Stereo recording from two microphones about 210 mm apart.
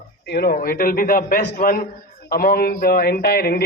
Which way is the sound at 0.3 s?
50° left (ahead or behind).